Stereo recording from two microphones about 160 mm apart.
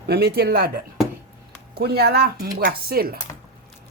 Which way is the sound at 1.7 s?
80° right.